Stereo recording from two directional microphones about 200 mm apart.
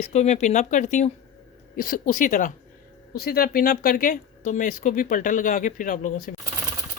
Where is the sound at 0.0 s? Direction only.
35° left (ahead or behind).